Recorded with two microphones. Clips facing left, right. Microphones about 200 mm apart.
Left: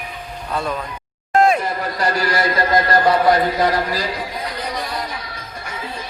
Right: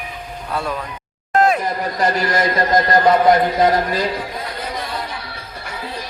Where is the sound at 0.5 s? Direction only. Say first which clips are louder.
Even; 5° right (ahead or behind).